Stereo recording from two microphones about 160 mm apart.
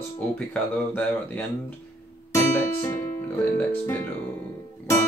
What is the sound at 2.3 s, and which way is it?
Music, 15° left (ahead or behind).